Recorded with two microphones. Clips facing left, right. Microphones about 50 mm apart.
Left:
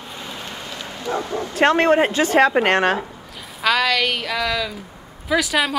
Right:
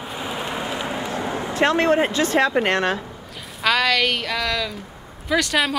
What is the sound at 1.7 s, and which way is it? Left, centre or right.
Speech, centre.